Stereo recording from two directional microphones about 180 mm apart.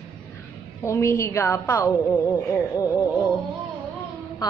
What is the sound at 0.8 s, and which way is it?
A woman's voice, 15° left (ahead or behind).